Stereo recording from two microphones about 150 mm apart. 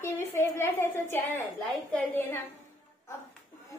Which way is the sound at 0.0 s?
15° left (ahead or behind).